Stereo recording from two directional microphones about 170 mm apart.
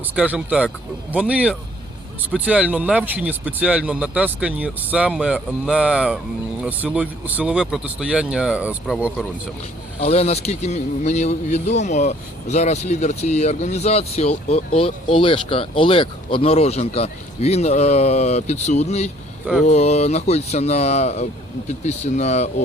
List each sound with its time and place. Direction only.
0.2 s speech: 5° right (ahead or behind)
10.0 s speech: 40° left (ahead or behind)